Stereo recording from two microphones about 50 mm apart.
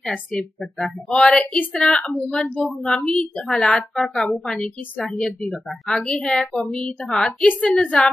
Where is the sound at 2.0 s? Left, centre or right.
Centre.